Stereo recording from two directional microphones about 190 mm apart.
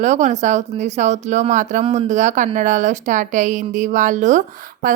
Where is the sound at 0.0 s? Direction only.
40° right (ahead or behind).